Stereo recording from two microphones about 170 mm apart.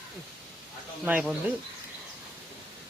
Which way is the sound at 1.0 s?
5° right (ahead or behind).